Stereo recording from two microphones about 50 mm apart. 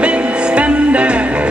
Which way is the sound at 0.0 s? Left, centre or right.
Right.